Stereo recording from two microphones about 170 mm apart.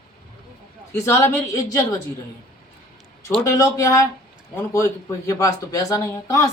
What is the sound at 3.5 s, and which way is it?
Speech, 15° left (ahead or behind).